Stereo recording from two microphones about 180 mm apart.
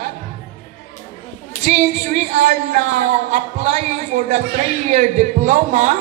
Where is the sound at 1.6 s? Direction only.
40° right (ahead or behind).